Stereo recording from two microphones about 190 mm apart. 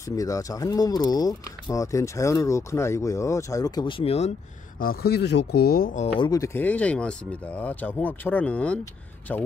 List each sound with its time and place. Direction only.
0.1 s speech: 20° left (ahead or behind)
4.7 s speech: 55° left (ahead or behind)
6.1 s speech: 20° left (ahead or behind)